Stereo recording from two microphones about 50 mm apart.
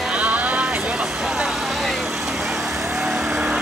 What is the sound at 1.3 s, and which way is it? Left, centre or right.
Vehicle, centre.